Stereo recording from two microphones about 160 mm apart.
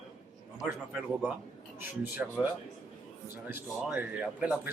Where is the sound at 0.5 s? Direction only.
5° right (ahead or behind).